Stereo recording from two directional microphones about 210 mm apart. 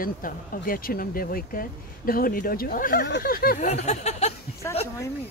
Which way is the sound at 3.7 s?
30° left (ahead or behind).